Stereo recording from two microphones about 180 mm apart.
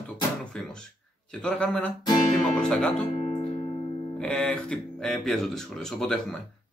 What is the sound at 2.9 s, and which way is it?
Music, 35° left (ahead or behind).